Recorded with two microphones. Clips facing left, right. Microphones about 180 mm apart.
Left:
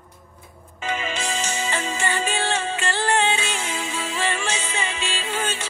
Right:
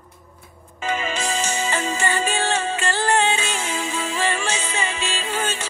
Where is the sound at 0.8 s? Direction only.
45° right (ahead or behind).